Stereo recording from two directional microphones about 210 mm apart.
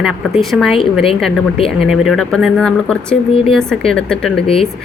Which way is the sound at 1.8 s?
Centre (ahead or behind).